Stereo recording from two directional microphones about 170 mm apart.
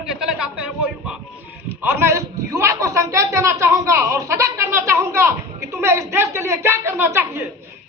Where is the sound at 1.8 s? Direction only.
15° right (ahead or behind).